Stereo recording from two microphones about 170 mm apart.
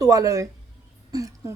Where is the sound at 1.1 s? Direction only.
20° right (ahead or behind).